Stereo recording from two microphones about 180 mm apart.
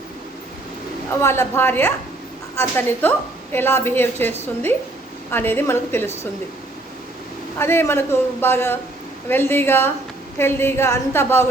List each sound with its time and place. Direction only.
1.2 s a man's voice: 15° left (ahead or behind)
7.6 s a man's voice: 15° left (ahead or behind)